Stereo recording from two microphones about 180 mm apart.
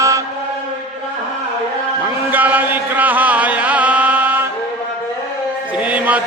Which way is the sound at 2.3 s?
10° right (ahead or behind).